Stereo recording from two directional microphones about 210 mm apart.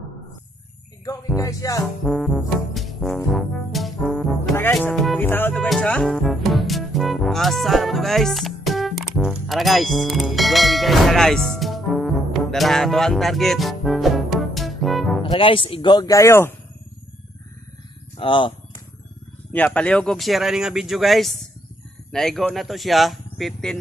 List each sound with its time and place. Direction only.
1.0 s music: 15° left (ahead or behind)
2.0 s music: centre (ahead or behind)
3.3 s trombone: centre (ahead or behind)
4.6 s music: 10° left (ahead or behind)
15.3 s a man's voice: 25° left (ahead or behind)
18.1 s speech: 25° left (ahead or behind)
19.5 s speech: 5° left (ahead or behind)